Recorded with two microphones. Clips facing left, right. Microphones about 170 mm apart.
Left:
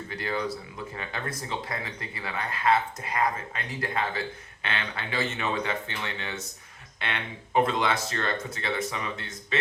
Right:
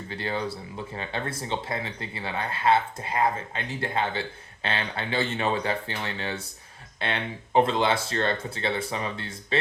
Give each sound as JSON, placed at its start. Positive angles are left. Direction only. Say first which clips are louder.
{"t": 0.1, "sound": "speech", "louder": "right 1 dB", "side_deg": -30}